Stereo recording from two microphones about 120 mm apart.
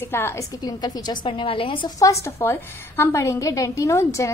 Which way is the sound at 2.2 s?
20° left (ahead or behind).